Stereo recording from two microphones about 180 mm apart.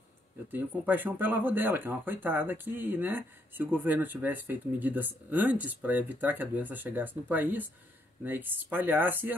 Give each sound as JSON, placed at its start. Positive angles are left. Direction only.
{"t": 0.5, "sound": "speech", "side_deg": -10}